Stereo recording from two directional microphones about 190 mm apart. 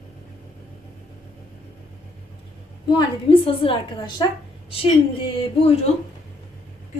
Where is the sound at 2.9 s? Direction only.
25° left (ahead or behind).